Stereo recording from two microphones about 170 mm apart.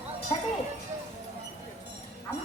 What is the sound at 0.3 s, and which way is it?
Speech, 35° left (ahead or behind).